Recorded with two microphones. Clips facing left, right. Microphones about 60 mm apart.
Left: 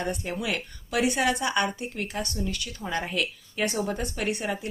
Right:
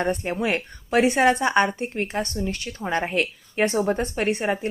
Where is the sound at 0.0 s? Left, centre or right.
Right.